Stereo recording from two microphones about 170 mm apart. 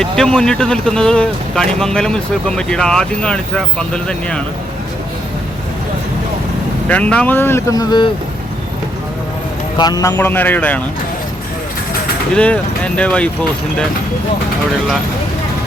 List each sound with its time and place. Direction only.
0.0 s speech: 5° left (ahead or behind)
6.8 s speech: 10° left (ahead or behind); by 8.1 s 25° left (ahead or behind)
9.7 s speech: 25° left (ahead or behind)
12.3 s speech: 5° left (ahead or behind)